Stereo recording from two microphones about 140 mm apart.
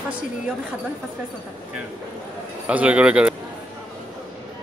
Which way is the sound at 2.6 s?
10° right (ahead or behind).